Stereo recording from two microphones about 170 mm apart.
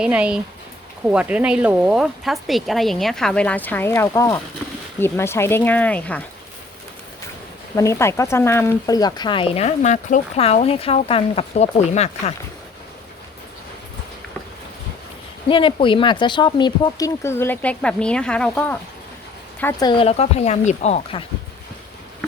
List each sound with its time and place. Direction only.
0.0 s speech: 5° right (ahead or behind)
7.8 s speech: 15° left (ahead or behind); by 12.3 s 40° left (ahead or behind)
15.4 s speech: 30° left (ahead or behind)
17.2 s speech: 15° left (ahead or behind)
19.8 s speech: 30° left (ahead or behind)